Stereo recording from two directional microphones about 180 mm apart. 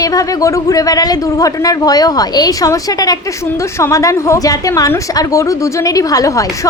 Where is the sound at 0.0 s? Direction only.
20° left (ahead or behind).